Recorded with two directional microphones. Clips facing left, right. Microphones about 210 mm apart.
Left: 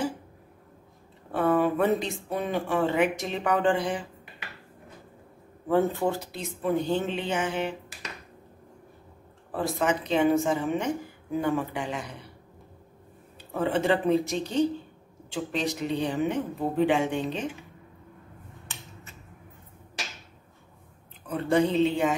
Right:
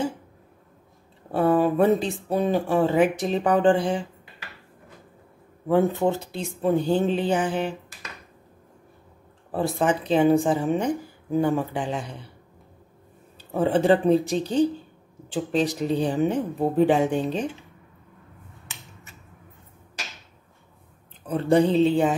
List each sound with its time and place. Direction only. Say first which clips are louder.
1.3 s speech: right 3 dB; 30° right (ahead or behind)
5.7 s speech: right 3 dB; 15° right (ahead or behind); by 7.7 s 35° right (ahead or behind)
9.5 s speech: right 3 dB; 30° right (ahead or behind)
13.5 s speech: right 5 dB; 30° right (ahead or behind)
21.3 s speech: right 4 dB; 30° right (ahead or behind)